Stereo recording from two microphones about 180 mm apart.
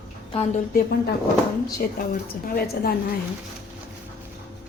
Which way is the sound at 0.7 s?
60° left (ahead or behind).